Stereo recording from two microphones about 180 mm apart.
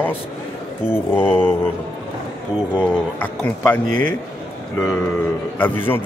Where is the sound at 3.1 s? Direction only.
10° left (ahead or behind).